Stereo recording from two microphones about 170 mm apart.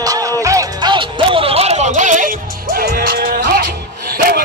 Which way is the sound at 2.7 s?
60° right (ahead or behind).